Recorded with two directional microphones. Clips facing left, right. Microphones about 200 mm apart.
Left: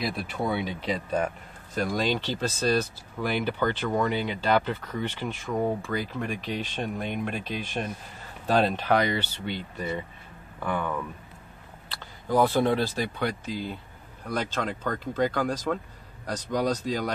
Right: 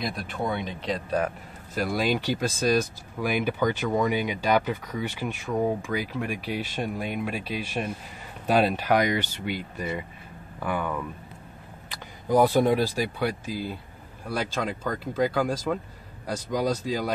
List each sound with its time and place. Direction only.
0.0 s speech: 5° left (ahead or behind)